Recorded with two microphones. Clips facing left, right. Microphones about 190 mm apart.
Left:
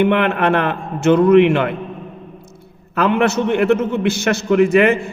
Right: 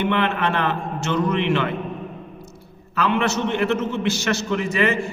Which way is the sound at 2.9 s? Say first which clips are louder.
Left 5 dB; 55° left (ahead or behind).